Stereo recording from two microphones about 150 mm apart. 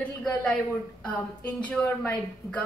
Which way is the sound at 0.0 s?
5° left (ahead or behind).